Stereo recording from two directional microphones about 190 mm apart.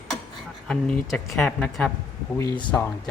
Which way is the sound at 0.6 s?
5° left (ahead or behind).